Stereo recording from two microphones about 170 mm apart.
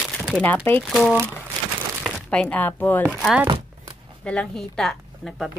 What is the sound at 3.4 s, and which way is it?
Chopping, 30° right (ahead or behind).